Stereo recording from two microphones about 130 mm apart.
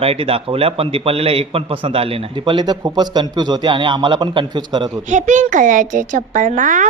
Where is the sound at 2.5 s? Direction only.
35° right (ahead or behind).